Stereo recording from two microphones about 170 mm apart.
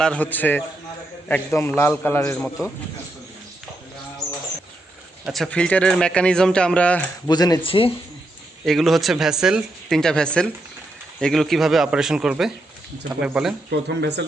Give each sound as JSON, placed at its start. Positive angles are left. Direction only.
{"t": 0.0, "sound": "a man's voice", "side_deg": 10}
{"t": 5.2, "sound": "speech", "side_deg": 0}
{"t": 7.3, "sound": "speech", "side_deg": 25}
{"t": 8.6, "sound": "speech", "side_deg": 0}
{"t": 13.7, "sound": "speech", "side_deg": -80}